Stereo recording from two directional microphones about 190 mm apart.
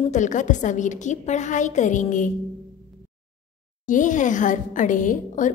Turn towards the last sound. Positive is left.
turn(degrees=45)  # may be behind; listen again after turning